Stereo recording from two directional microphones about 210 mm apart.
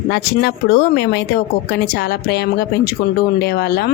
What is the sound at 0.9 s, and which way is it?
A woman's voice, 50° left (ahead or behind).